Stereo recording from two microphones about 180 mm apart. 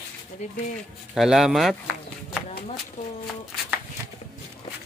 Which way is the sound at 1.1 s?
Centre (ahead or behind).